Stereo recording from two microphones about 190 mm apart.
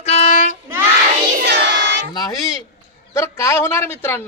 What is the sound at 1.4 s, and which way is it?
Choir, 65° right (ahead or behind).